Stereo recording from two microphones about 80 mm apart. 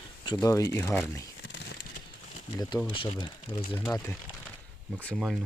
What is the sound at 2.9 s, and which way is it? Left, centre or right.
Speech, left.